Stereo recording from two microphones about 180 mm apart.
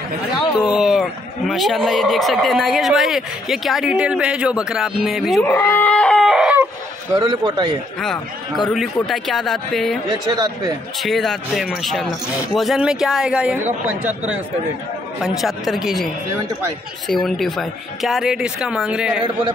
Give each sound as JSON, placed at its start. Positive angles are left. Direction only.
{"t": 0.6, "sound": "speech", "side_deg": -5}
{"t": 5.5, "sound": "a sound", "side_deg": 15}
{"t": 7.2, "sound": "a man's voice", "side_deg": -25}
{"t": 8.0, "sound": "speech", "side_deg": 5}
{"t": 10.1, "sound": "a man's voice", "side_deg": -20}
{"t": 11.0, "sound": "speech", "side_deg": 0}
{"t": 17.1, "sound": "speech", "side_deg": 0}